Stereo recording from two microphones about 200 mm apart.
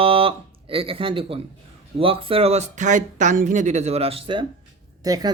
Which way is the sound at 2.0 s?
25° right (ahead or behind).